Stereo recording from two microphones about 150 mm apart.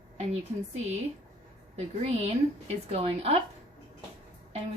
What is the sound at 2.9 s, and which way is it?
Speech, 40° right (ahead or behind).